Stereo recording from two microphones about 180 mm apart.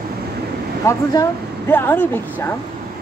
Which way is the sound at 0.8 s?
15° left (ahead or behind).